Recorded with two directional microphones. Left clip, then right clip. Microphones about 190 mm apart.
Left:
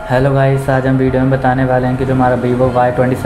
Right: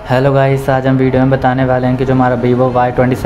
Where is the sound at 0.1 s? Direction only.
20° right (ahead or behind).